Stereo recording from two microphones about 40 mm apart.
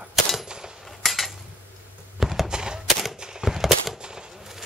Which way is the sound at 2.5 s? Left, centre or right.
Centre.